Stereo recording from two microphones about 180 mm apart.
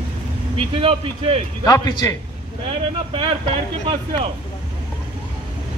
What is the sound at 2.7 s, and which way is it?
Speech, 35° right (ahead or behind).